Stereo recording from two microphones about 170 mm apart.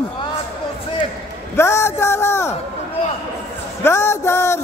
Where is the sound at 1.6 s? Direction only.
15° left (ahead or behind).